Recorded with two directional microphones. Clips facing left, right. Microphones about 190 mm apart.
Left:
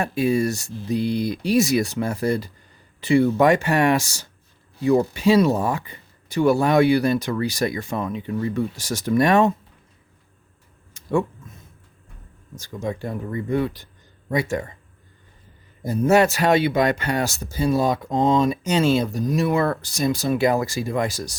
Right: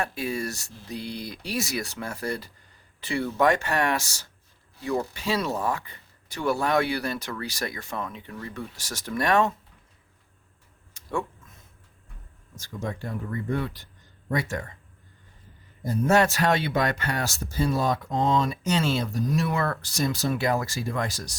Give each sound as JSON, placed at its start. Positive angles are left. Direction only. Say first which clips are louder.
{"t": 0.0, "sound": "speech", "louder": "left 9 dB", "side_deg": 15}
{"t": 12.5, "sound": "speech", "louder": "left 5 dB", "side_deg": 15}
{"t": 15.8, "sound": "speech", "louder": "left 4 dB", "side_deg": 10}